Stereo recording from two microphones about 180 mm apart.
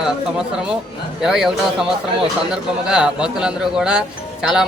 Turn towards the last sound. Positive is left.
turn(degrees=-5)  # may be behind; listen again after turning